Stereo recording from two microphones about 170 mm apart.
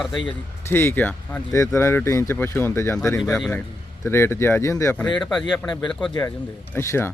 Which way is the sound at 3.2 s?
Centre (ahead or behind).